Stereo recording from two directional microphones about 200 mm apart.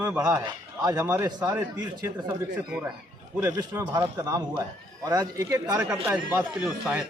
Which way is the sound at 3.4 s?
15° right (ahead or behind).